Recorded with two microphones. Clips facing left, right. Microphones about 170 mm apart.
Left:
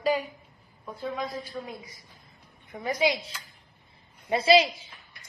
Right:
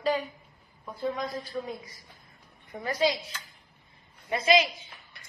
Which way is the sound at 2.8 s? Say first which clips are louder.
Left 1 dB; 15° left (ahead or behind).